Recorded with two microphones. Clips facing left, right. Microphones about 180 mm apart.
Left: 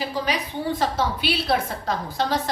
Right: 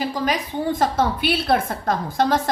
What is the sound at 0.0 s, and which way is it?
A woman's voice, 45° right (ahead or behind).